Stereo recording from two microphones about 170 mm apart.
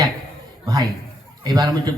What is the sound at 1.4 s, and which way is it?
Speech, 25° right (ahead or behind).